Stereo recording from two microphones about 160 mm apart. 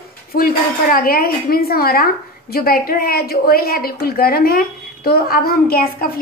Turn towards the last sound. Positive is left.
turn(degrees=70)  # may be behind; listen again after turning